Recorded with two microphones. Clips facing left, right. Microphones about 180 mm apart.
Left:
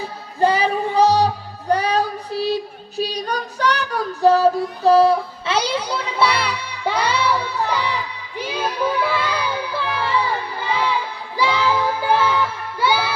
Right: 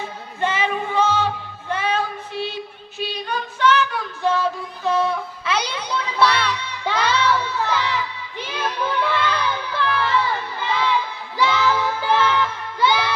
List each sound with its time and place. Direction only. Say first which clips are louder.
0.0 s music: left 6 dB; 35° left (ahead or behind)
3.0 s child singing: left 3 dB; 40° left (ahead or behind)
6.3 s music: even; 10° left (ahead or behind)